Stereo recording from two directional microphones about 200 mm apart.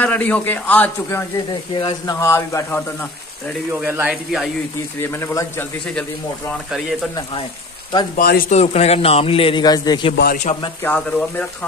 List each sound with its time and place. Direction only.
0.0 s a man's voice: 5° left (ahead or behind)
1.8 s a man's voice: 20° left (ahead or behind)
3.8 s speech: 5° right (ahead or behind)
5.0 s a man's voice: 10° left (ahead or behind)
5.9 s speech: centre (ahead or behind)
8.2 s speech: 45° left (ahead or behind)
8.5 s a man's voice: 30° left (ahead or behind)
10.3 s a man's voice: 35° left (ahead or behind)
10.8 s a man's voice: 10° left (ahead or behind)